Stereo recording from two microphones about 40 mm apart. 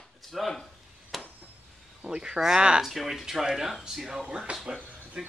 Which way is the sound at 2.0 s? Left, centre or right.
Centre.